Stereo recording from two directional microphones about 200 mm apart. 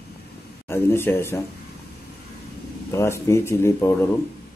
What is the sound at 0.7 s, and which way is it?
Speech, 10° left (ahead or behind).